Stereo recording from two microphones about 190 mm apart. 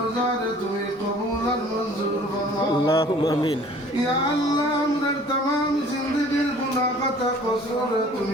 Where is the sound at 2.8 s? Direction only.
25° left (ahead or behind).